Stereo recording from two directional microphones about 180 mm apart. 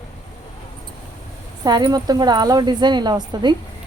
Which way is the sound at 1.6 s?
25° right (ahead or behind).